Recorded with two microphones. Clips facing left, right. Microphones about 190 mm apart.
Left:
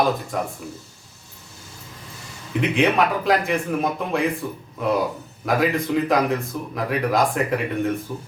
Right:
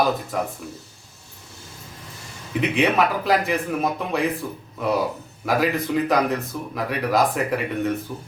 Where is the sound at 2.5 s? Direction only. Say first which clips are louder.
Left 1 dB; centre (ahead or behind).